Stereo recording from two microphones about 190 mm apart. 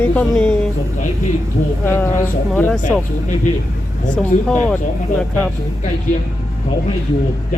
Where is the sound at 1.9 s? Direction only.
10° left (ahead or behind).